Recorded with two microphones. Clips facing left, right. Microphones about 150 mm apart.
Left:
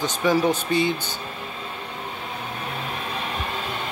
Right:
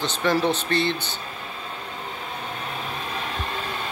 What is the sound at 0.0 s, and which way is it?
Speech, 10° left (ahead or behind).